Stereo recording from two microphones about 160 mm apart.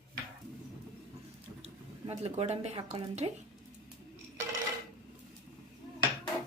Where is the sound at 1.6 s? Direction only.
40° right (ahead or behind).